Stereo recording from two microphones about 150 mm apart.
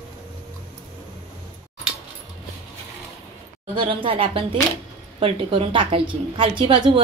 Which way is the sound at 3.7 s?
35° right (ahead or behind).